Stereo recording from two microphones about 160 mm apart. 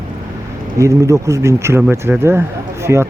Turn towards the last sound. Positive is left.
turn(degrees=-15)  # may be behind; listen again after turning